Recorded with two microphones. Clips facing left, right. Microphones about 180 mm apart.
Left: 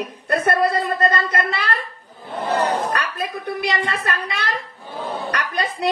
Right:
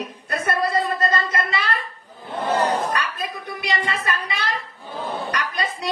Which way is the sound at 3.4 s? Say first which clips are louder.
Left 4 dB; 60° left (ahead or behind).